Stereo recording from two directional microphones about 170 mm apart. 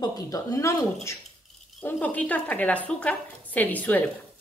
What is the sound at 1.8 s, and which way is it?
A woman's voice, 5° left (ahead or behind).